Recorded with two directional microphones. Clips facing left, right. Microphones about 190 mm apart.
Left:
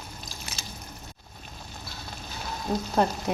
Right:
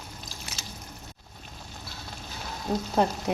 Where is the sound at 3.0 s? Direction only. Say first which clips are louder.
Even; 20° right (ahead or behind).